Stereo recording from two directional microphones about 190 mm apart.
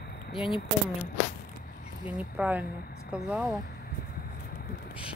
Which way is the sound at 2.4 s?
10° right (ahead or behind).